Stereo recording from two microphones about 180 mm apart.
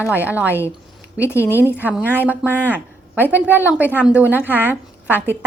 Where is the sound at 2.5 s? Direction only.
10° left (ahead or behind).